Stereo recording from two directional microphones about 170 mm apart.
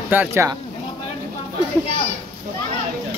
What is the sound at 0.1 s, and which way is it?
Speech, 15° right (ahead or behind).